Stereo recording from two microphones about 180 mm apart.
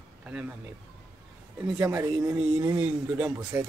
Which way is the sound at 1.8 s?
15° right (ahead or behind).